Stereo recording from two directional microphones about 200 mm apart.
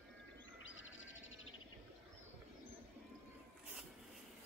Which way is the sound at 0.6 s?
75° left (ahead or behind).